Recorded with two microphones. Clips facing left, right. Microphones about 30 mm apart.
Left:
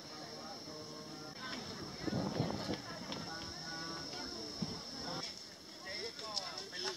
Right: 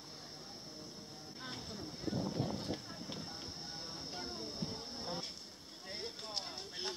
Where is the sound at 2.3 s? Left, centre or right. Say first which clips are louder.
Left 1 dB; left.